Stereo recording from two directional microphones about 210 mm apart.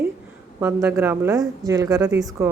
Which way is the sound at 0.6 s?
10° right (ahead or behind).